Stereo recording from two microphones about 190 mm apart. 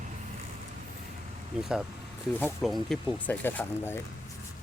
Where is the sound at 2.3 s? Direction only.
5° left (ahead or behind).